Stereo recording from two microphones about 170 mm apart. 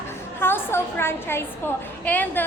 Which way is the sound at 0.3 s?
15° left (ahead or behind).